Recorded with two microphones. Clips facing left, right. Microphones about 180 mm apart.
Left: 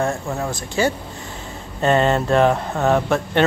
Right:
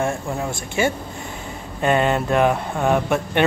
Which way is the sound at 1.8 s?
10° right (ahead or behind).